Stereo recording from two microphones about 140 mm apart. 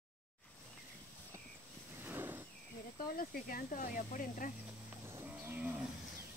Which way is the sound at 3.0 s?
90° left.